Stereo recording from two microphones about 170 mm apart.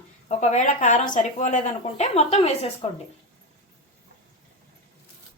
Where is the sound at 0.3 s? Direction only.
45° left (ahead or behind).